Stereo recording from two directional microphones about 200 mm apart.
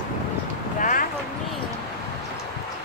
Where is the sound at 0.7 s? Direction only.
40° left (ahead or behind).